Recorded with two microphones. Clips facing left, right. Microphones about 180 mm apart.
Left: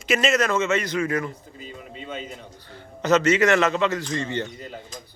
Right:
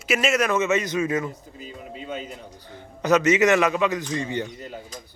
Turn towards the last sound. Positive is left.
turn(degrees=-10)  # may be behind; listen again after turning